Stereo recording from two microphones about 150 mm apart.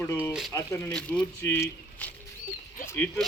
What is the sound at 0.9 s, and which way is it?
Speech, 5° left (ahead or behind).